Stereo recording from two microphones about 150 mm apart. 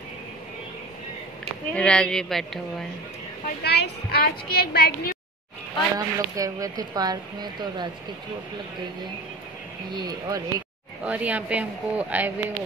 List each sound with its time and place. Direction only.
1.4 s speech: 5° left (ahead or behind)
3.4 s a woman's voice: 90° left
5.9 s speech: 25° right (ahead or behind)
9.9 s speech: 30° right (ahead or behind)
11.1 s speech: 10° right (ahead or behind)